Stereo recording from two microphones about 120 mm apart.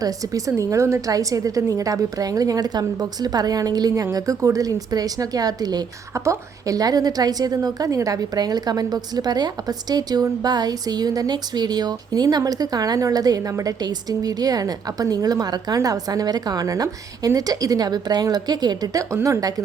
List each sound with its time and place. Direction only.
0.0 s a woman's voice: 30° right (ahead or behind)